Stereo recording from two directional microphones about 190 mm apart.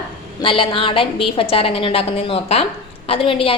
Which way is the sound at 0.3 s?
25° left (ahead or behind).